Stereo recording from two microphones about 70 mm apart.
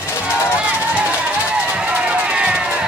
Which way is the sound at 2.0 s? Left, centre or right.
Centre.